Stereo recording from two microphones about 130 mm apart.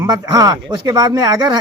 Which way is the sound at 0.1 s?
30° right (ahead or behind).